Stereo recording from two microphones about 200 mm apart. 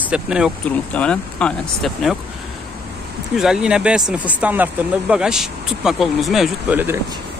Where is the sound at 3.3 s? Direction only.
5° right (ahead or behind).